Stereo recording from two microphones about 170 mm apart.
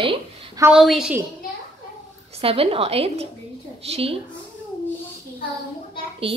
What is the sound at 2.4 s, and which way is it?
A woman's voice, 35° right (ahead or behind).